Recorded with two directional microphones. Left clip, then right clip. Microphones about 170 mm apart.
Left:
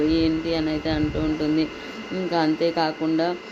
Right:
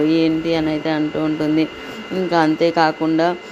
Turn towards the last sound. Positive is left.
turn(degrees=-20)  # may be behind; listen again after turning